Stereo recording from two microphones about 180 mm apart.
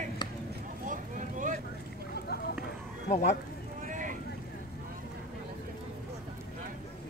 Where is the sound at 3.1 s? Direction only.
40° left (ahead or behind).